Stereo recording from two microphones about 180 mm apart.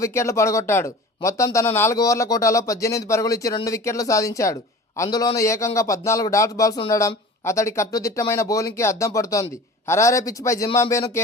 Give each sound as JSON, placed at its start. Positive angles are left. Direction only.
{"t": 0.0, "sound": "speech", "side_deg": 15}